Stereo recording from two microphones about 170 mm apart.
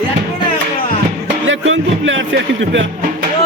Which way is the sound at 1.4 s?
90° right.